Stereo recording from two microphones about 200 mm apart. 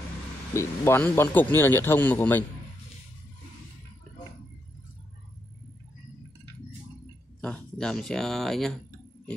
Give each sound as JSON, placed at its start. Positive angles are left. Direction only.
{"t": 0.5, "sound": "a man's voice", "side_deg": 15}
{"t": 7.3, "sound": "speech", "side_deg": 5}